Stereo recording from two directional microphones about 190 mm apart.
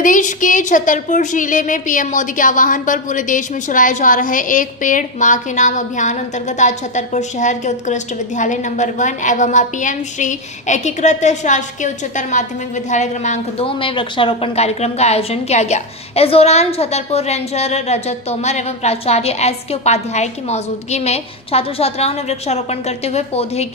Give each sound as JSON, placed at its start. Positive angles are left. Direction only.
{"t": 0.0, "sound": "a woman's voice", "side_deg": 45}